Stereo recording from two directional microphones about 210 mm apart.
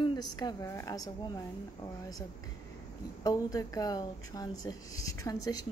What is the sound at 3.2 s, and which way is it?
A woman's voice, 15° left (ahead or behind).